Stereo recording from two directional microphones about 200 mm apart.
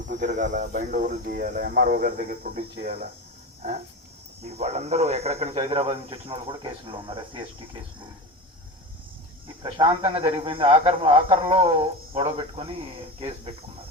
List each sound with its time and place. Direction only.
0.2 s speech: 40° right (ahead or behind)
4.4 s a man's voice: 30° right (ahead or behind)
9.6 s a man's voice: 25° right (ahead or behind)